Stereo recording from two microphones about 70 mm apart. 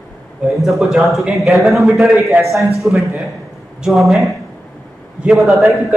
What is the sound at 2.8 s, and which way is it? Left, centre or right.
Speech, centre.